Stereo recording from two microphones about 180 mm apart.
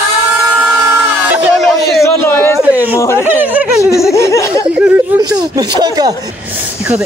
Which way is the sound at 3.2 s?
10° right (ahead or behind).